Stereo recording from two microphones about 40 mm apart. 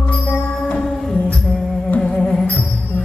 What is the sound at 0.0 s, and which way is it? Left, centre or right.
Music, left.